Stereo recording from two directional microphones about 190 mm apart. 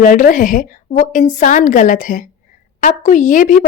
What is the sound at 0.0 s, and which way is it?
A woman's voice, 45° left (ahead or behind).